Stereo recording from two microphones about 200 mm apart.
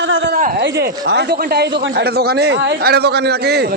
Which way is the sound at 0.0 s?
65° right (ahead or behind).